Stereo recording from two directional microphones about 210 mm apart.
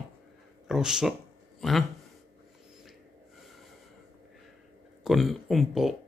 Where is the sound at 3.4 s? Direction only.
Centre (ahead or behind).